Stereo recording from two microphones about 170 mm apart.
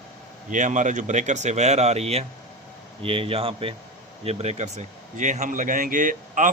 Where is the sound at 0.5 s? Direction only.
45° right (ahead or behind).